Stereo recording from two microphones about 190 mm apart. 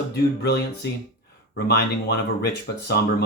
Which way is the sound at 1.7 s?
60° left (ahead or behind).